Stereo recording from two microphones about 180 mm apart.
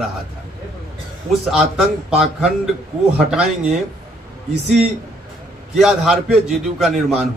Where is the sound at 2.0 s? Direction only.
5° right (ahead or behind).